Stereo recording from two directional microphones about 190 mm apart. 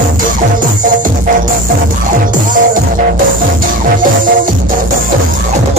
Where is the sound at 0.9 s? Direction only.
45° right (ahead or behind).